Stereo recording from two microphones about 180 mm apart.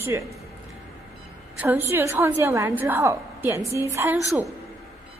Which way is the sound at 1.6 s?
10° right (ahead or behind).